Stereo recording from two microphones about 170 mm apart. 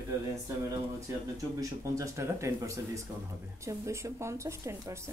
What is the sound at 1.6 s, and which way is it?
Speech, 20° right (ahead or behind).